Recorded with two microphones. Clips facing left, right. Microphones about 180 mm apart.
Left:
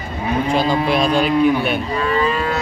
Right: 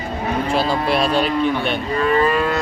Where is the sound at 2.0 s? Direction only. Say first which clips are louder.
Right 4 dB; 55° right (ahead or behind).